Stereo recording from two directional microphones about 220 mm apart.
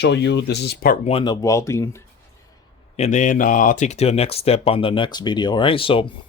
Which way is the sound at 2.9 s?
30° left (ahead or behind).